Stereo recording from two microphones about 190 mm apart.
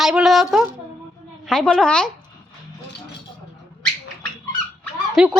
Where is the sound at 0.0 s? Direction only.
Centre (ahead or behind).